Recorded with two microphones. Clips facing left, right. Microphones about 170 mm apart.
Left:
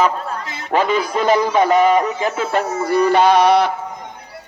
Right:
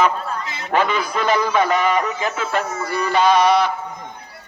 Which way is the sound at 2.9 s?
60° left (ahead or behind).